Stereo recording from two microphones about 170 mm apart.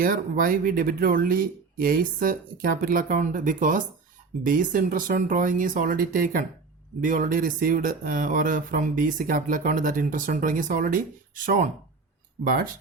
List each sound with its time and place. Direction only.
0.0 s speech: 55° right (ahead or behind)